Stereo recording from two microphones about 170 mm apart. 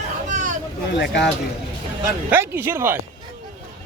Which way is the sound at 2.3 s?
15° right (ahead or behind).